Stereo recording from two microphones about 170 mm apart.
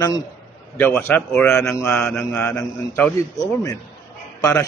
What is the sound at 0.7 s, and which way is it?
A man's voice, 10° left (ahead or behind).